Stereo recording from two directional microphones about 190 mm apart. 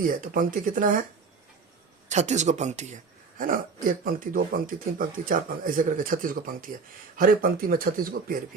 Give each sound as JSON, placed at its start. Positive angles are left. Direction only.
{"t": 0.1, "sound": "speech", "side_deg": -45}
{"t": 2.0, "sound": "speech", "side_deg": -40}